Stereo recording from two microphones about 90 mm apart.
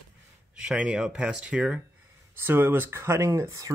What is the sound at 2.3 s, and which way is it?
Speech, 25° right (ahead or behind).